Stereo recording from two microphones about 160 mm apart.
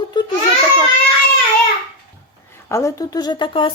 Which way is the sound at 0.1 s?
30° left (ahead or behind).